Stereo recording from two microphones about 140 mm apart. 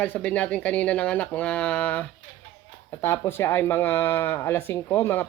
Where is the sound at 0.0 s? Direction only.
10° left (ahead or behind).